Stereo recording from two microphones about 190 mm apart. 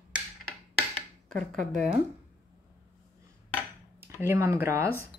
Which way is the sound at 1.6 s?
45° right (ahead or behind).